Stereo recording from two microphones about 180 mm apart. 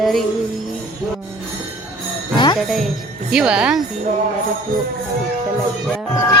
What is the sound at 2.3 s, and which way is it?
Jingle bell, 25° left (ahead or behind).